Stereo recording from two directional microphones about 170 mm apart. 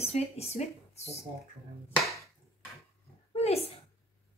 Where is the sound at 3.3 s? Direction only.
35° left (ahead or behind).